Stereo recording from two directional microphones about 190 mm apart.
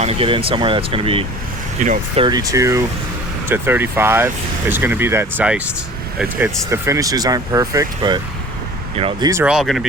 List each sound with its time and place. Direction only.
0.0 s speech: 30° right (ahead or behind)
1.8 s speech: 40° right (ahead or behind)
2.2 s speech: 20° right (ahead or behind)
9.3 s speech: 5° right (ahead or behind)